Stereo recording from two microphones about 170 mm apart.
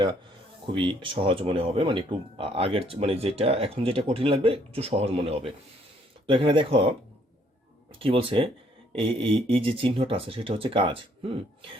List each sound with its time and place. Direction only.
0.7 s speech: 30° right (ahead or behind)
7.9 s speech: 30° right (ahead or behind)